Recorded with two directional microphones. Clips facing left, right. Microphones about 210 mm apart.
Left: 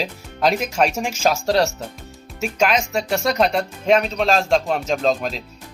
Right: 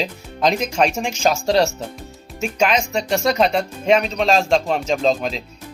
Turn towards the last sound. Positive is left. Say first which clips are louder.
# right 1 dB
turn(degrees=0)  # may be behind; listen again after turning